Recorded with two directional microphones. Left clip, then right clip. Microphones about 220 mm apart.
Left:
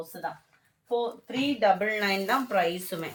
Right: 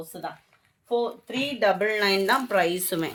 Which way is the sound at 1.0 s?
50° right (ahead or behind).